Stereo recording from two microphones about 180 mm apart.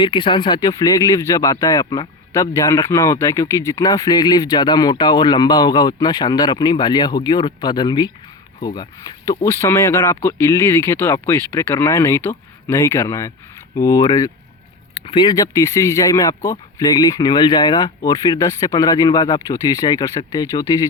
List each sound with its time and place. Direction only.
0.0 s speech: 25° left (ahead or behind)